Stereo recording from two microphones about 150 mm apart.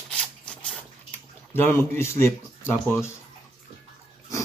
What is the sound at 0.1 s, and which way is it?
Zipper, 5° left (ahead or behind).